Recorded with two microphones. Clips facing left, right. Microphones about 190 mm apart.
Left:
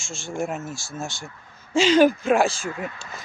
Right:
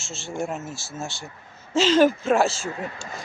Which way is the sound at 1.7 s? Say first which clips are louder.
Left 1 dB; centre (ahead or behind).